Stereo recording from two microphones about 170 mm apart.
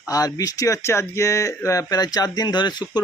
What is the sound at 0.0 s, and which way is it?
Speech, 20° left (ahead or behind).